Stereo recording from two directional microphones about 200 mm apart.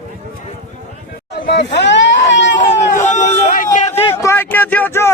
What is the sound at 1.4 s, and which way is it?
Speech, 55° left (ahead or behind).